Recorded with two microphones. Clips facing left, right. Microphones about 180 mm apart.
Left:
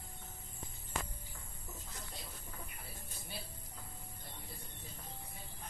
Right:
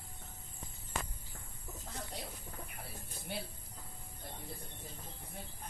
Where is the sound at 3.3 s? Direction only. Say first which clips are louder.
Right 7 dB; 65° right (ahead or behind).